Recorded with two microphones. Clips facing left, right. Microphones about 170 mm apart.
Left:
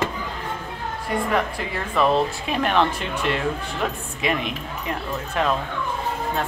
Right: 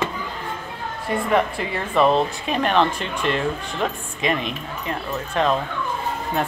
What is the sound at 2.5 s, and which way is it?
Speech, 5° left (ahead or behind).